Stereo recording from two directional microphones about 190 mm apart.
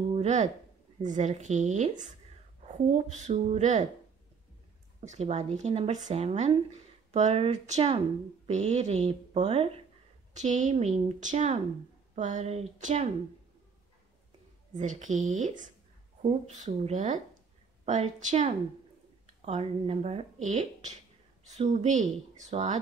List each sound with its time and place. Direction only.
0.1 s a sound: 35° right (ahead or behind)
1.0 s speech: 40° right (ahead or behind)
5.0 s speech: 35° right (ahead or behind)
14.8 s speech: 40° right (ahead or behind)